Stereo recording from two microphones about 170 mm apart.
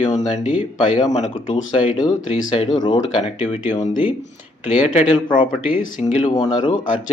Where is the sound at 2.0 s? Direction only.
35° left (ahead or behind).